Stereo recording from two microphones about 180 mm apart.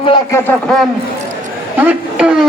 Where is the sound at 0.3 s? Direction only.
15° left (ahead or behind).